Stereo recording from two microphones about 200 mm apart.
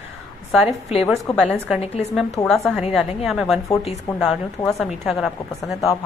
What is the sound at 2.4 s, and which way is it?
Speech, 15° left (ahead or behind).